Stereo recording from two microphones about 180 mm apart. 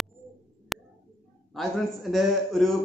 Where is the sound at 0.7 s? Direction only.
Centre (ahead or behind).